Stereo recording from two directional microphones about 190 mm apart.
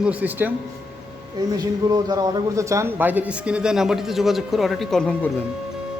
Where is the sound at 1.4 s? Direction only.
20° right (ahead or behind); by 5.2 s 5° left (ahead or behind).